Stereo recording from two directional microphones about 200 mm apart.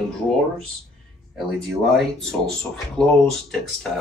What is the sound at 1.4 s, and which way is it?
Speech, centre (ahead or behind).